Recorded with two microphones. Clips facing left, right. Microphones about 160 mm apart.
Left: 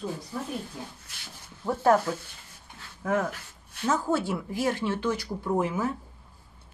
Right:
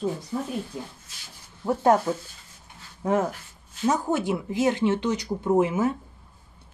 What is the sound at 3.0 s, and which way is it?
Speech, 25° right (ahead or behind).